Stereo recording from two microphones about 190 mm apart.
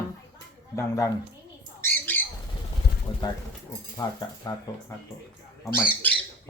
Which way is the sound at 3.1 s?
25° left (ahead or behind).